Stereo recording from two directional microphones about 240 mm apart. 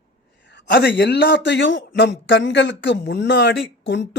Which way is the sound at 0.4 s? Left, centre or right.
Left.